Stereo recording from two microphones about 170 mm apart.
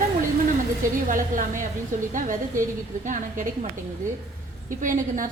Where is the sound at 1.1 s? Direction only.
50° right (ahead or behind).